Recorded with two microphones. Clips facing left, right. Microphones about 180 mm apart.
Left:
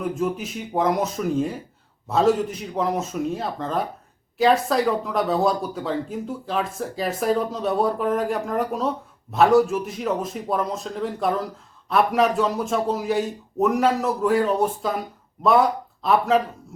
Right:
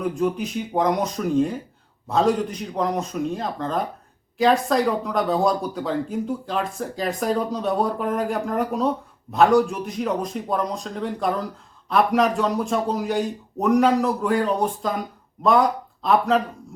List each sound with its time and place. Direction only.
0.0 s speech: centre (ahead or behind)